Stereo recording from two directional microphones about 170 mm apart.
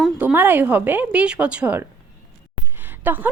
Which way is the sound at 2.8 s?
10° right (ahead or behind).